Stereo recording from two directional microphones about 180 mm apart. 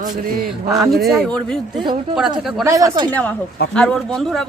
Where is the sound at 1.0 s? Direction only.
Centre (ahead or behind).